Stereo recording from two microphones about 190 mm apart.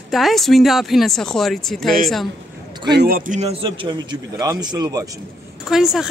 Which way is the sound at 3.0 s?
50° right (ahead or behind).